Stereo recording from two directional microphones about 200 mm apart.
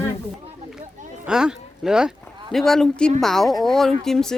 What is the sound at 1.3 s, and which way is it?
Speech, 5° right (ahead or behind).